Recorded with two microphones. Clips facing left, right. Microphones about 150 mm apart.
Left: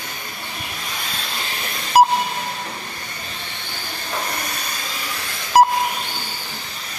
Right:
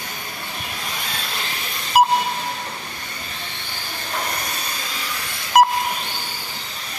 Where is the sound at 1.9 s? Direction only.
40° left (ahead or behind).